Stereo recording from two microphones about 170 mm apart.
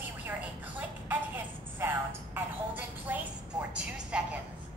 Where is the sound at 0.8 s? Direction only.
10° right (ahead or behind).